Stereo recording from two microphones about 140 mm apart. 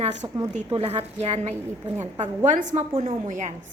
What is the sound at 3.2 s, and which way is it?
Speech, 60° right (ahead or behind).